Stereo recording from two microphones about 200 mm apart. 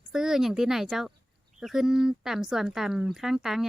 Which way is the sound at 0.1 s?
Centre (ahead or behind).